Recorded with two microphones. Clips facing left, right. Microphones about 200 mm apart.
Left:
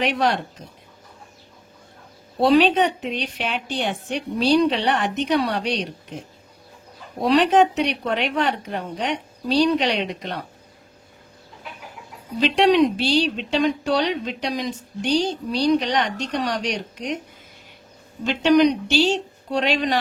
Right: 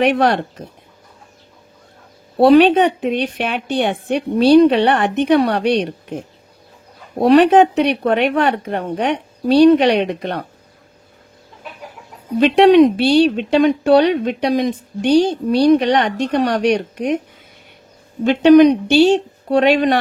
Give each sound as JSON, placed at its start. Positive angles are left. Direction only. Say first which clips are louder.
{"t": 0.0, "sound": "speech", "louder": "right 7 dB", "side_deg": -55}
{"t": 2.3, "sound": "speech", "louder": "right 7 dB", "side_deg": -60}
{"t": 12.4, "sound": "speech", "louder": "right 8 dB", "side_deg": -55}
{"t": 18.2, "sound": "speech", "louder": "right 8 dB", "side_deg": -55}